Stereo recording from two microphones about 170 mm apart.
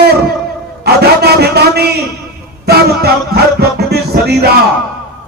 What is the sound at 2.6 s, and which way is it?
Music, 70° right (ahead or behind).